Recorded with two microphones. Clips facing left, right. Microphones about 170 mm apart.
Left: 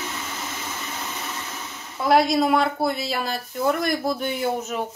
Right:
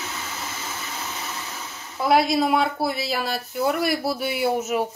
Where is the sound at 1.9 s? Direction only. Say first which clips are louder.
Left 1 dB; centre (ahead or behind).